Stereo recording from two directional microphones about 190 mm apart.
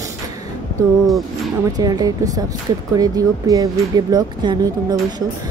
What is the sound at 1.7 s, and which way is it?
Speech, 20° right (ahead or behind).